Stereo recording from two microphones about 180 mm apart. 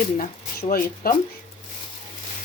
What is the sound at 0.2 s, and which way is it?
Speech, 55° left (ahead or behind).